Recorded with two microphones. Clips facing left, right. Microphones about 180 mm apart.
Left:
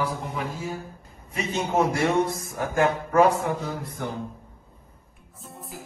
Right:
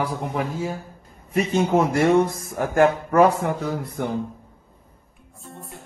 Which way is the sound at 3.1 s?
60° right (ahead or behind).